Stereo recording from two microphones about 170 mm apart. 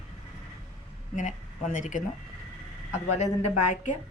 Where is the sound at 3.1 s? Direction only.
45° left (ahead or behind).